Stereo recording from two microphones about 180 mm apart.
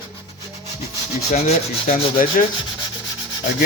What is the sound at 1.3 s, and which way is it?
Sanding, 40° left (ahead or behind).